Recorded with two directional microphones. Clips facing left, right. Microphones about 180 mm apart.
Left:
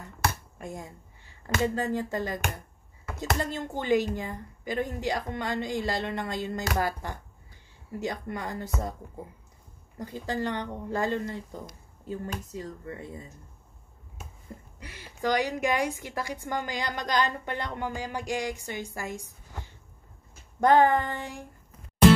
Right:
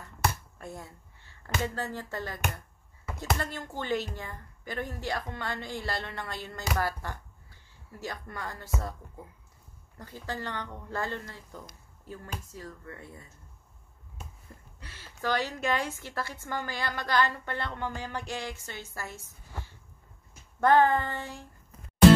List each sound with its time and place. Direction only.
0.6 s a sound: 15° left (ahead or behind)
1.8 s a woman's voice: 15° left (ahead or behind)
9.9 s a woman's voice: 15° left (ahead or behind)
14.8 s a woman's voice: 15° left (ahead or behind)